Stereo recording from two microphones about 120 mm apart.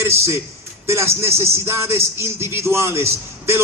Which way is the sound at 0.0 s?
20° right (ahead or behind).